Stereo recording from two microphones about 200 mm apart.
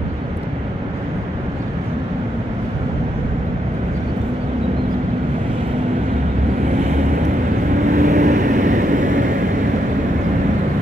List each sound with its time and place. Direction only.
7.9 s vehicle: 40° right (ahead or behind)